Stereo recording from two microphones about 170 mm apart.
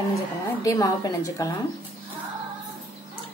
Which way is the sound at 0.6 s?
20° left (ahead or behind).